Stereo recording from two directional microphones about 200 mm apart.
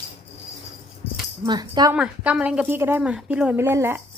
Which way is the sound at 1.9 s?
5° right (ahead or behind).